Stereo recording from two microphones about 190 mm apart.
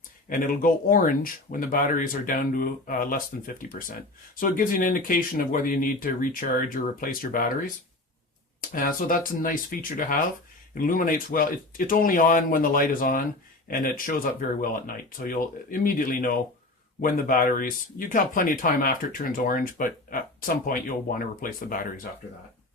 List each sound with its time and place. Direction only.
0.3 s speech: 45° left (ahead or behind)
8.7 s speech: 45° left (ahead or behind)